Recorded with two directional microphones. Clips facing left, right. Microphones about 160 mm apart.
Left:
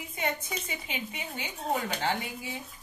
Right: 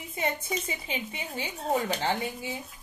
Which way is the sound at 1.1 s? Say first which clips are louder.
Right 3 dB; 35° right (ahead or behind).